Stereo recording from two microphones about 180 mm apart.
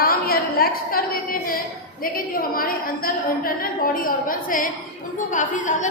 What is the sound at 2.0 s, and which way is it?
A woman's voice, 55° left (ahead or behind).